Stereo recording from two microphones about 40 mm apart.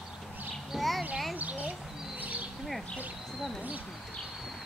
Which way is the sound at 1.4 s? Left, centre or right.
Right.